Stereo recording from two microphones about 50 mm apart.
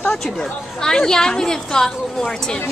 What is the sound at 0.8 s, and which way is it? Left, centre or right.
A woman's voice, centre.